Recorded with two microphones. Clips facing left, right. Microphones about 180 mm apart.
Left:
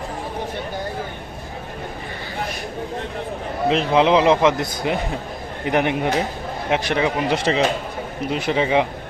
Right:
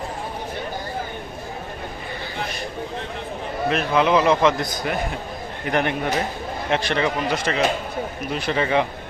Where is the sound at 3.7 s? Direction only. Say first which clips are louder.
Left 3 dB; 20° left (ahead or behind).